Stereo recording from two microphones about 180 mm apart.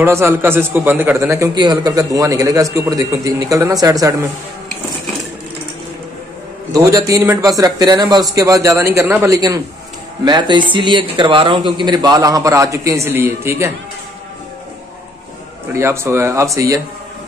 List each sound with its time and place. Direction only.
0.0 s a man's voice: 15° right (ahead or behind)
6.7 s a man's voice: 20° right (ahead or behind)
15.7 s a man's voice: 15° right (ahead or behind)